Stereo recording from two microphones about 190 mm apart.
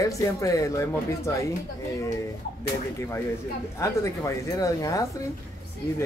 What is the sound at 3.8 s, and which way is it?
Speech, 15° left (ahead or behind).